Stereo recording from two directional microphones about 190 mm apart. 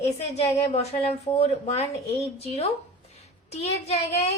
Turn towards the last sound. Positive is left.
turn(degrees=35)  # may be behind; listen again after turning